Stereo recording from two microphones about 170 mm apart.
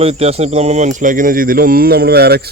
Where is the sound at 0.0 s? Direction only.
35° right (ahead or behind).